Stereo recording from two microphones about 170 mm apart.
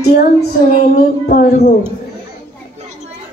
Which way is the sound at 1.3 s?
50° left (ahead or behind).